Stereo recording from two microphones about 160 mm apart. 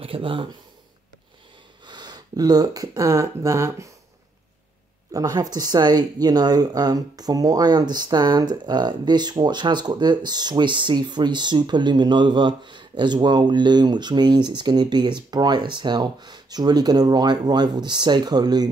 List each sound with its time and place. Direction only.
0.0 s speech: 35° right (ahead or behind)
1.9 s speech: 25° right (ahead or behind)
5.1 s speech: 25° right (ahead or behind)